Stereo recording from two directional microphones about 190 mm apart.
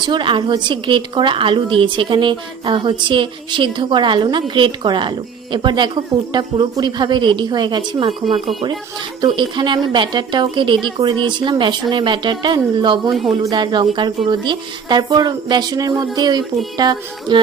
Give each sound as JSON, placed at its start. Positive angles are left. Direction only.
{"t": 0.0, "sound": "a woman's voice", "side_deg": -25}
{"t": 9.2, "sound": "a woman's voice", "side_deg": -25}
{"t": 13.1, "sound": "speech", "side_deg": 0}
{"t": 13.4, "sound": "a woman's voice", "side_deg": -20}